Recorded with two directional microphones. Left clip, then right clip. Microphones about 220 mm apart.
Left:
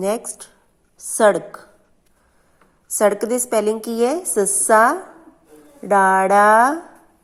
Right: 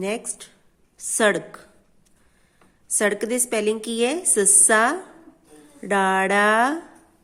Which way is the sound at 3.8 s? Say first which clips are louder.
Left 4 dB; centre (ahead or behind).